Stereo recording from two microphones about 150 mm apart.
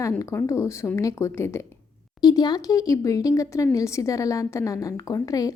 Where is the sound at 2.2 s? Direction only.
25° left (ahead or behind).